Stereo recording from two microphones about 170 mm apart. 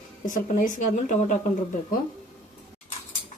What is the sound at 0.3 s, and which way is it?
Speech, 50° left (ahead or behind).